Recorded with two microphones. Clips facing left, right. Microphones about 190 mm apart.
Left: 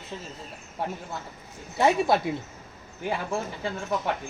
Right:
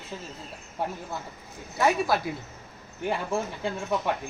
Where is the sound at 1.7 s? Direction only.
25° left (ahead or behind).